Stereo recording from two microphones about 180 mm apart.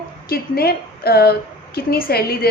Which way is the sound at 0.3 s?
60° left (ahead or behind).